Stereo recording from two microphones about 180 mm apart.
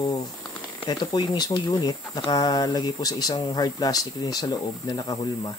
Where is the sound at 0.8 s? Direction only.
25° left (ahead or behind).